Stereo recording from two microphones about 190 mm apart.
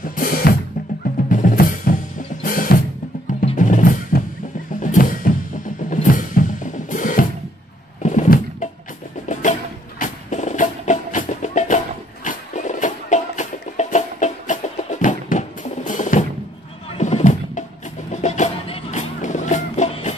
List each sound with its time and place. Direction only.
0.0 s drum kit: 45° left (ahead or behind)
1.3 s drum: 45° left (ahead or behind)
3.3 s percussion: 45° left (ahead or behind)
4.7 s music: 45° left (ahead or behind)
5.9 s drum kit: 45° left (ahead or behind)
8.0 s a sound: 40° left (ahead or behind)
9.3 s music: 40° left (ahead or behind)